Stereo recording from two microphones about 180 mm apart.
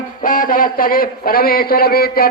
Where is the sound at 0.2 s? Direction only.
50° left (ahead or behind).